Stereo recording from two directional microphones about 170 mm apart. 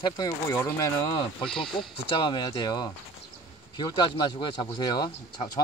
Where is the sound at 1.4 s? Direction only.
5° left (ahead or behind).